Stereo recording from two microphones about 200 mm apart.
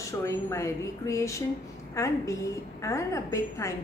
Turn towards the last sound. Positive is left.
turn(degrees=15)  # may be behind; listen again after turning